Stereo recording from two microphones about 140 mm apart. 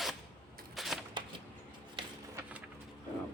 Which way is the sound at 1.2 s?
35° right (ahead or behind).